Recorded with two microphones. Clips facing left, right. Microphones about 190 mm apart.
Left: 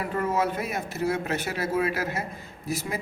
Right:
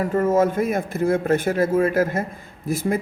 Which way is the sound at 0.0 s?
45° right (ahead or behind).